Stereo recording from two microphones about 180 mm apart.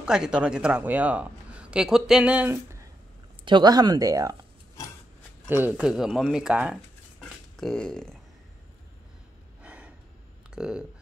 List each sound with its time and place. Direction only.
0.0 s a man's voice: 5° right (ahead or behind)
5.5 s speech: 10° right (ahead or behind)
9.6 s gasp: 5° right (ahead or behind)
10.5 s speech: 5° right (ahead or behind)